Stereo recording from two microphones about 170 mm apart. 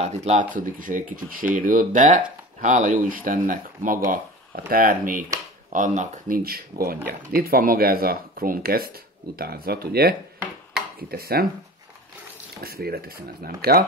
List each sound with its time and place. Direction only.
0.0 s speech: 40° right (ahead or behind)
0.6 s speech: 50° right (ahead or behind)
12.6 s speech: 65° right (ahead or behind)